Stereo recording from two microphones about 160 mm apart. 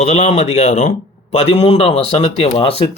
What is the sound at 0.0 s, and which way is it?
A man's voice, 40° left (ahead or behind).